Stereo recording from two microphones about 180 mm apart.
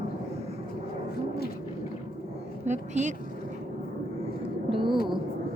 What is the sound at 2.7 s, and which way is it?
Speech, 40° right (ahead or behind).